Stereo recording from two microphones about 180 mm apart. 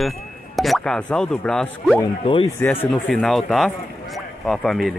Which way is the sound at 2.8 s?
5° left (ahead or behind).